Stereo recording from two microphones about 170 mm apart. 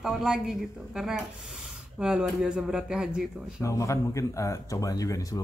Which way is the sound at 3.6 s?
20° left (ahead or behind).